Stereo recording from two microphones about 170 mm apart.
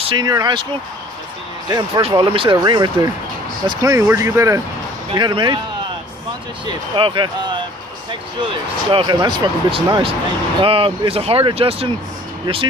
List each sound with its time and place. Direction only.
0.0 s speech: 25° right (ahead or behind)
1.7 s speech: 25° right (ahead or behind)
6.6 s speech: 30° right (ahead or behind)